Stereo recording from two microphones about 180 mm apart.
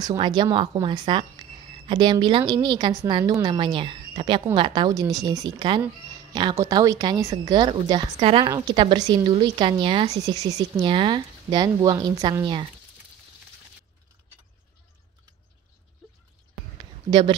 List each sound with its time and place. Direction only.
0.0 s a woman's voice: 20° right (ahead or behind)
17.1 s a woman's voice: 25° right (ahead or behind)